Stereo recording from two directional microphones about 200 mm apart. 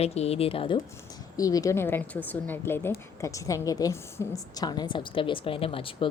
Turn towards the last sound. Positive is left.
turn(degrees=25)  # may be behind; listen again after turning